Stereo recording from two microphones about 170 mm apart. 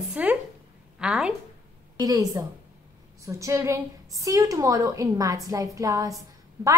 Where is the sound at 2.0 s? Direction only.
20° right (ahead or behind).